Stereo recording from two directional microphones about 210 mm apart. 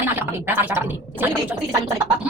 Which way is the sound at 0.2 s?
10° right (ahead or behind).